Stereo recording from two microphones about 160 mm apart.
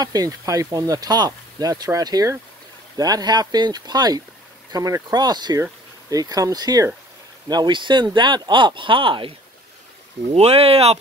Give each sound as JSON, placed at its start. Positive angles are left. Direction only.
{"t": 0.0, "sound": "speech", "side_deg": -25}
{"t": 10.3, "sound": "speech", "side_deg": -40}